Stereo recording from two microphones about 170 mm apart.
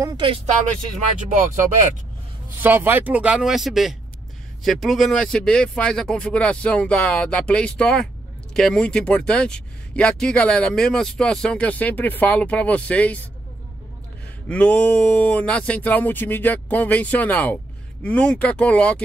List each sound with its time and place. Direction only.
1.3 s speech: 50° right (ahead or behind)
2.6 s speech: 10° right (ahead or behind); by 13.3 s 10° left (ahead or behind)
14.5 s speech: 5° left (ahead or behind)